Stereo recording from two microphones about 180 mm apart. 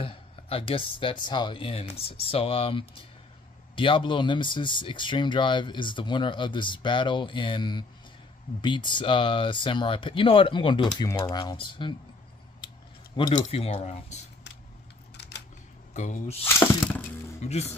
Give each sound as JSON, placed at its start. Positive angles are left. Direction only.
{"t": 0.0, "sound": "a sound", "side_deg": 30}
{"t": 1.2, "sound": "speech", "side_deg": 25}
{"t": 12.5, "sound": "scissors", "side_deg": 25}
{"t": 13.3, "sound": "speech", "side_deg": 40}
{"t": 15.1, "sound": "camera", "side_deg": 70}
{"t": 15.9, "sound": "speech", "side_deg": 40}
{"t": 16.4, "sound": "a sound", "side_deg": 10}
{"t": 17.4, "sound": "speech", "side_deg": 40}